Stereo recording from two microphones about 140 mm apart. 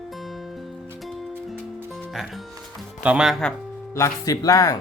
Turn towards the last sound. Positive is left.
turn(degrees=25)  # may be behind; listen again after turning